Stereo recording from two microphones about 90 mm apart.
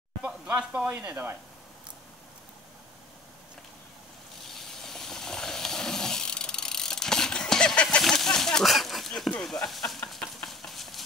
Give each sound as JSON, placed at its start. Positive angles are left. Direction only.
{"t": 0.2, "sound": "speech", "side_deg": -15}
{"t": 4.6, "sound": "vehicle", "side_deg": 5}
{"t": 8.0, "sound": "a sound", "side_deg": 5}